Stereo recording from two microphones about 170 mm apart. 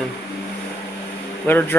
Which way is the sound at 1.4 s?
10° left (ahead or behind).